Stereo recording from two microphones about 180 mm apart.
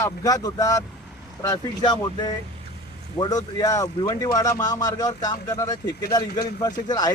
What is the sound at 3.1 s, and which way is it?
A man's voice, 25° left (ahead or behind).